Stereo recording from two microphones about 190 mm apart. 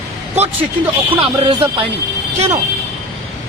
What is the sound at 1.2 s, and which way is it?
Speech, 25° right (ahead or behind).